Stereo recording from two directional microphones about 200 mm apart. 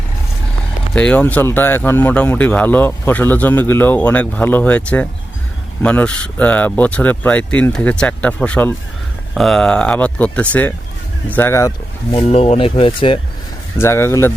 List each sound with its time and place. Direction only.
0.9 s speech: 5° left (ahead or behind)
12.1 s speech: 30° left (ahead or behind)
13.7 s speech: 10° left (ahead or behind)